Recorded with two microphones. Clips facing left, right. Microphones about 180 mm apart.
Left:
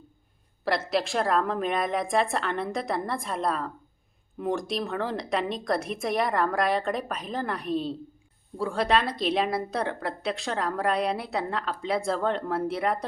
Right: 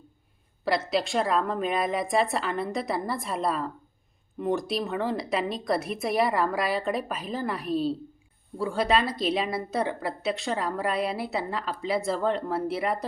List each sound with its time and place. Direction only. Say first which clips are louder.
0.6 s a woman's voice: even; centre (ahead or behind)